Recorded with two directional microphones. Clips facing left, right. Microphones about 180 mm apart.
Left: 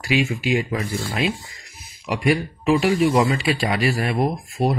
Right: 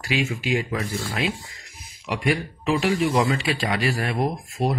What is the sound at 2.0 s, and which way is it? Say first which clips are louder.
Speech: left 4 dB; 10° left (ahead or behind).